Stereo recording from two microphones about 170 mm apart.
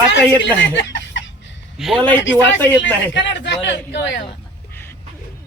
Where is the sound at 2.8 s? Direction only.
90° left.